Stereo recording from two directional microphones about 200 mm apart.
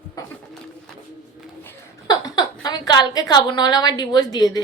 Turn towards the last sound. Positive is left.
turn(degrees=20)  # may be behind; listen again after turning